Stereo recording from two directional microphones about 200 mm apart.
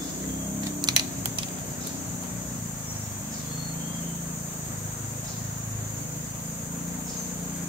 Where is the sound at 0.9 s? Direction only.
20° right (ahead or behind).